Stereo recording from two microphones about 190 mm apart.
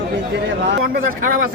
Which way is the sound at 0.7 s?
65° right (ahead or behind).